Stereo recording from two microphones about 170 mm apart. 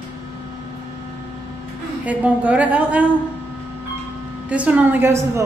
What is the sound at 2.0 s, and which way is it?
Speech, 10° right (ahead or behind).